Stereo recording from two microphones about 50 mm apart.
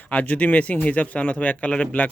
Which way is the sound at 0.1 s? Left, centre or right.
Left.